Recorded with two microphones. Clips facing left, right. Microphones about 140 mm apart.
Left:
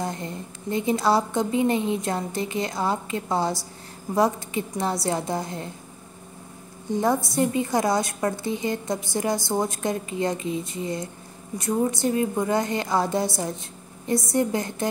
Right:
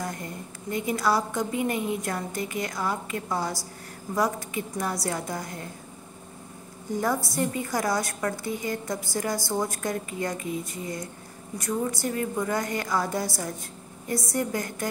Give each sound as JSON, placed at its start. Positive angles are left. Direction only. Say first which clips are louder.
{"t": 0.0, "sound": "a woman's voice", "louder": "left 4 dB", "side_deg": 25}
{"t": 6.9, "sound": "a woman's voice", "louder": "left 4 dB", "side_deg": 20}